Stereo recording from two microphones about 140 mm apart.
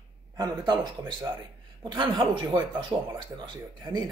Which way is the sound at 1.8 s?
35° right (ahead or behind).